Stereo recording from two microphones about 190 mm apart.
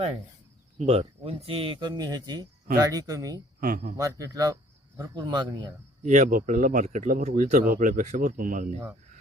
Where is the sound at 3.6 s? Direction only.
50° right (ahead or behind).